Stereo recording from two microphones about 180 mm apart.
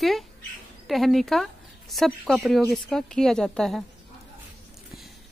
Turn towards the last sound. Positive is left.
turn(degrees=0)  # may be behind; listen again after turning